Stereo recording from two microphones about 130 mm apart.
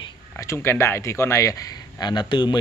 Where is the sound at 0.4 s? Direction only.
20° left (ahead or behind).